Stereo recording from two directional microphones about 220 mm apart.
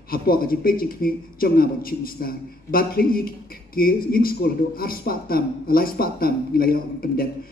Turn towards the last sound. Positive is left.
turn(degrees=40)  # may be behind; listen again after turning